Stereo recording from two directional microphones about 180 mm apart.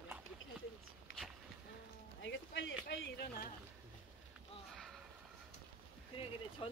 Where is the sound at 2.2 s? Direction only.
85° left; by 3.5 s 65° left (ahead or behind).